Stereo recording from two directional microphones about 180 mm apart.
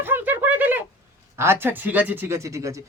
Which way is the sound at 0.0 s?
10° right (ahead or behind).